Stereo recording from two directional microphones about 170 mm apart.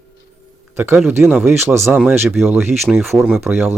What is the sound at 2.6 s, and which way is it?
Speech, 15° right (ahead or behind).